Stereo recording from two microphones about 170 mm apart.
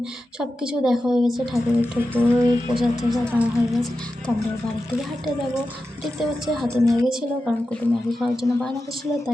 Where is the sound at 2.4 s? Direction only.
25° right (ahead or behind).